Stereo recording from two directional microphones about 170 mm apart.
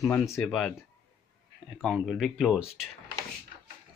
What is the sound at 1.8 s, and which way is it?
Speech, centre (ahead or behind).